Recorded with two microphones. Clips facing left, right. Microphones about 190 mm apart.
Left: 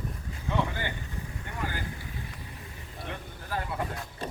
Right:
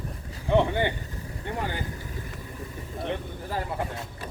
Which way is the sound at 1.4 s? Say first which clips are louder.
Right 6 dB; 35° right (ahead or behind).